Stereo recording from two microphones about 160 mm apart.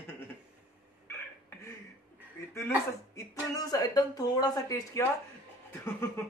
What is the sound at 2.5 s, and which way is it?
A man's voice, 20° left (ahead or behind).